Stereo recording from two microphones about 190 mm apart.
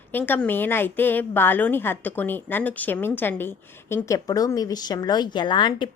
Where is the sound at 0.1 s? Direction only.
10° left (ahead or behind).